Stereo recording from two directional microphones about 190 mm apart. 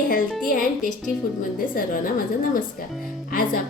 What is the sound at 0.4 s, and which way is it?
Speech, 45° left (ahead or behind).